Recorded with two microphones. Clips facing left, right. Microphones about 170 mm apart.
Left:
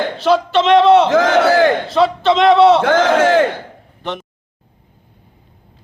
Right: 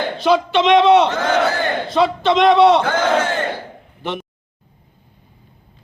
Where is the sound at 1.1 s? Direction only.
90° left.